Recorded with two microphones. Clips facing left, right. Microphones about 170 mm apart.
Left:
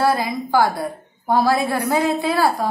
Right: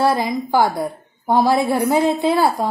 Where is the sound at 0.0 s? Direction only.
20° right (ahead or behind).